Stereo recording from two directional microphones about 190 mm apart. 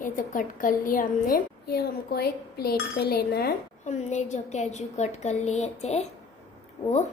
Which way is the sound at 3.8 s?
40° left (ahead or behind).